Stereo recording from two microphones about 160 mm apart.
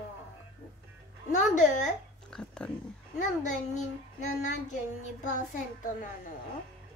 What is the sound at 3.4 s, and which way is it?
A child's voice, 50° left (ahead or behind).